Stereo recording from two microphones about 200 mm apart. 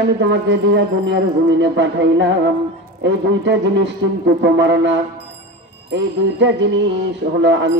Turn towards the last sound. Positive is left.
turn(degrees=-65)  # may be behind; listen again after turning